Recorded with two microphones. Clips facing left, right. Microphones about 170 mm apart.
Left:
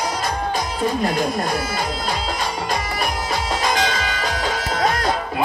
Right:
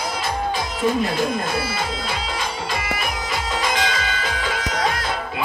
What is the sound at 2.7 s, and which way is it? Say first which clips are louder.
Music: left 2 dB; 40° left (ahead or behind).